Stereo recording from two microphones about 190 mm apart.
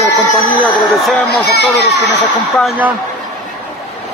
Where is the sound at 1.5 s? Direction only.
60° left (ahead or behind).